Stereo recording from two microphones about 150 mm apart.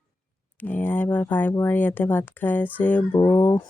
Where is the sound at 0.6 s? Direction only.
10° left (ahead or behind).